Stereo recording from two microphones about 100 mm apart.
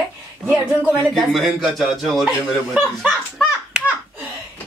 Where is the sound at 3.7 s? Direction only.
5° right (ahead or behind).